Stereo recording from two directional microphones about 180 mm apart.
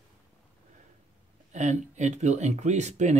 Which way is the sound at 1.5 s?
40° right (ahead or behind).